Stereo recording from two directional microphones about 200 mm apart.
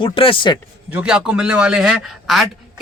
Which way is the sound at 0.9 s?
5° right (ahead or behind).